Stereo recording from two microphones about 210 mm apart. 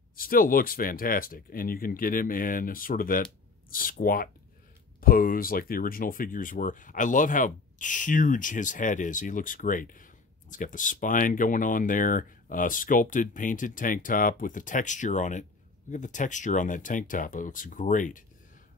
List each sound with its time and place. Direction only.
0.1 s speech: 45° left (ahead or behind)